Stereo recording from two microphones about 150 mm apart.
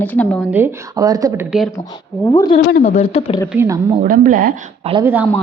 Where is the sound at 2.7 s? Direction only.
80° left.